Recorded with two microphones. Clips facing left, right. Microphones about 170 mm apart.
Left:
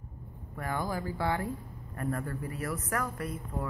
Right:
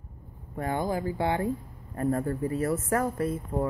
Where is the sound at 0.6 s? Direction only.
20° right (ahead or behind).